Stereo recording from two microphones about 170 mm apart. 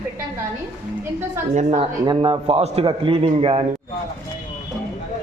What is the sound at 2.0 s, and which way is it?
A man's voice, 25° right (ahead or behind).